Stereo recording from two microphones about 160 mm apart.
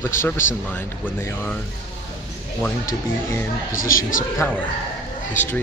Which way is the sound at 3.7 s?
60° left (ahead or behind).